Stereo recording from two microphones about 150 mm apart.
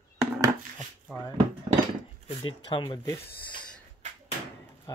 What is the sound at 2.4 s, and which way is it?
Speech, 30° left (ahead or behind).